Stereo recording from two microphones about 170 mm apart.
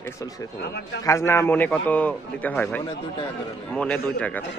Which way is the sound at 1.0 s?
15° left (ahead or behind).